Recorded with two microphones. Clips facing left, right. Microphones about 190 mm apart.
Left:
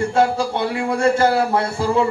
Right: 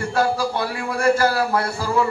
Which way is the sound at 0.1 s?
25° left (ahead or behind).